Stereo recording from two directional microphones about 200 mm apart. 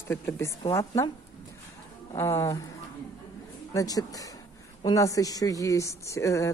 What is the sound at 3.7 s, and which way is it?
Speech, 20° left (ahead or behind).